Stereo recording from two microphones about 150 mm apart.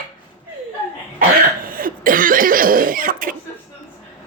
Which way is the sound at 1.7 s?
70° right (ahead or behind).